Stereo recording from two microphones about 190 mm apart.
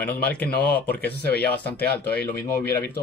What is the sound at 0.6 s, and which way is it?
Speech, 55° left (ahead or behind).